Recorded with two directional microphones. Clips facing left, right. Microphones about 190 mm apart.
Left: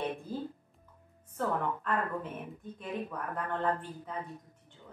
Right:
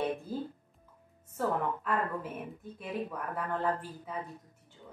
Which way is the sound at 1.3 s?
10° right (ahead or behind).